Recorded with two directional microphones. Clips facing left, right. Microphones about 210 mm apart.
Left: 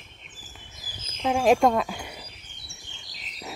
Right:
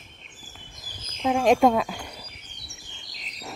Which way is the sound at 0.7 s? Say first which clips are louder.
Right 1 dB; 5° left (ahead or behind).